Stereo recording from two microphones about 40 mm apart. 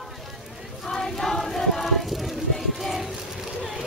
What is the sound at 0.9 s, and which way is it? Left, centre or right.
Choir, centre.